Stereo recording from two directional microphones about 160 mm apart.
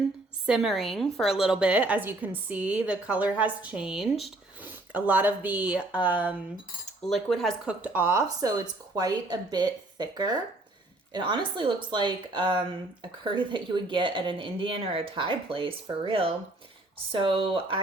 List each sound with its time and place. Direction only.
0.4 s a woman's voice: centre (ahead or behind)
7.0 s speech: centre (ahead or behind); by 17.7 s 35° right (ahead or behind)